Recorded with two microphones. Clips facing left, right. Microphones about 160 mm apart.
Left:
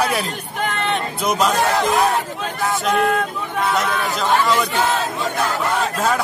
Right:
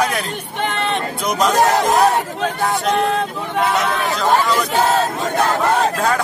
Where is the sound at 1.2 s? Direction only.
5° left (ahead or behind).